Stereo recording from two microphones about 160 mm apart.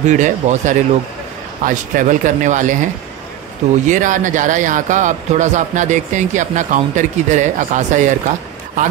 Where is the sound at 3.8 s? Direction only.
55° right (ahead or behind).